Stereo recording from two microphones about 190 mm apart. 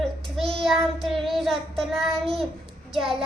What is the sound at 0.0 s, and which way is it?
Child singing, centre (ahead or behind).